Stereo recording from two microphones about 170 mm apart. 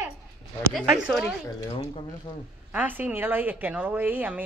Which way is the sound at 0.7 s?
Centre (ahead or behind).